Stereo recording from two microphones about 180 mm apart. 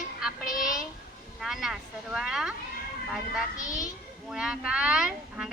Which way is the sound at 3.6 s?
20° left (ahead or behind).